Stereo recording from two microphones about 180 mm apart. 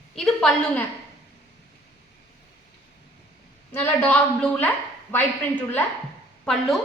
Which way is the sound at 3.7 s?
10° left (ahead or behind).